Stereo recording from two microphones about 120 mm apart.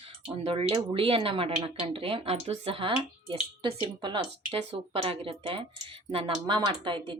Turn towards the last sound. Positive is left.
turn(degrees=-40)  # may be behind; listen again after turning